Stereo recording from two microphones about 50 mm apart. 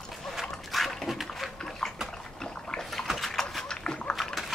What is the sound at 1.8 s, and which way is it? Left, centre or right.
Bathtub, centre.